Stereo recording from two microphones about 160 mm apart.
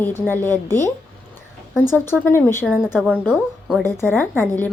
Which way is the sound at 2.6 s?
5° right (ahead or behind).